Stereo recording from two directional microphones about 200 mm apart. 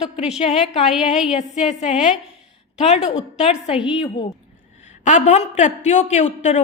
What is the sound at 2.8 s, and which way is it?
A woman's voice, 35° left (ahead or behind).